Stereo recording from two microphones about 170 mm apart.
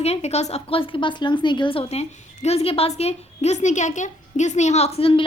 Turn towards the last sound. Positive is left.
turn(degrees=35)  # may be behind; listen again after turning